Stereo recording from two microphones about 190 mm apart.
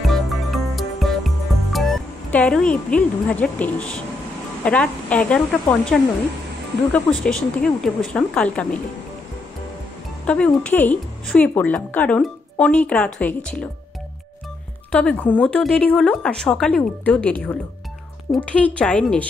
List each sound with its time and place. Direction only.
0.0 s music: centre (ahead or behind)
4.6 s a woman's voice: 5° left (ahead or behind)
10.2 s a woman's voice: 5° left (ahead or behind)
14.9 s a woman's voice: 5° left (ahead or behind)